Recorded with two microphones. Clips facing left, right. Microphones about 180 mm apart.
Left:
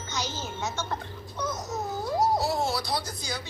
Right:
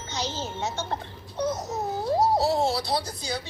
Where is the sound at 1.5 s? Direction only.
30° right (ahead or behind).